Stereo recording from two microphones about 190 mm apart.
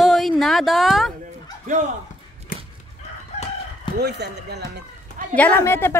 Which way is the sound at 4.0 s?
60° right (ahead or behind).